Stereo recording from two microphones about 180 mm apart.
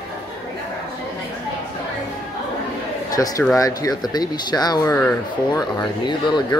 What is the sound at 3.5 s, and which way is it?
Speech, 20° left (ahead or behind).